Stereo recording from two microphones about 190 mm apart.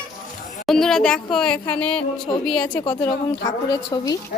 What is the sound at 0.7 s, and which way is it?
A woman's voice, centre (ahead or behind).